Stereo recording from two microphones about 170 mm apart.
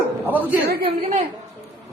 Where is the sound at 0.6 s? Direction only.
60° right (ahead or behind).